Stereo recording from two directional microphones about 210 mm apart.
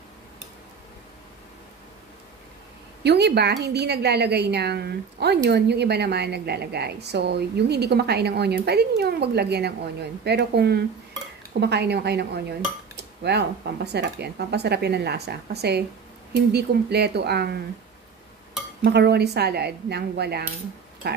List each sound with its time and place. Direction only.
3.0 s a woman's voice: 55° right (ahead or behind)
12.9 s dishes: 50° right (ahead or behind)
13.9 s a woman's voice: 50° right (ahead or behind)
18.9 s a woman's voice: 50° right (ahead or behind)